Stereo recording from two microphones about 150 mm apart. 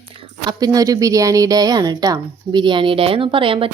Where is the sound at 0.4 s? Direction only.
25° right (ahead or behind).